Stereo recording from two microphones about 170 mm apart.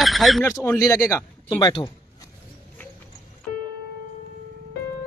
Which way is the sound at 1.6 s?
30° left (ahead or behind).